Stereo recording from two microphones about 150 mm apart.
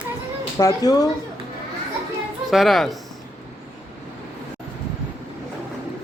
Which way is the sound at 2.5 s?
Centre (ahead or behind).